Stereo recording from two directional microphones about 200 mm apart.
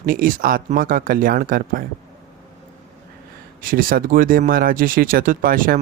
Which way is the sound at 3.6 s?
45° right (ahead or behind).